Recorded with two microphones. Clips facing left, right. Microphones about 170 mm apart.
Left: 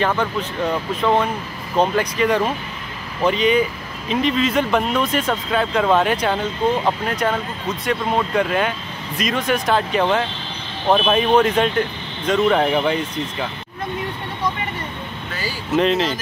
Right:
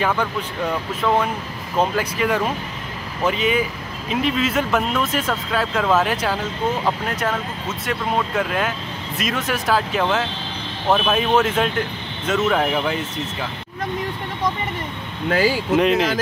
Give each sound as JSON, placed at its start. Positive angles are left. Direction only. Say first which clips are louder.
{"t": 0.2, "sound": "speech", "louder": "left 2 dB", "side_deg": -10}
{"t": 15.2, "sound": "speech", "louder": "right 13 dB", "side_deg": -90}
{"t": 15.7, "sound": "speech", "louder": "left 2 dB", "side_deg": -10}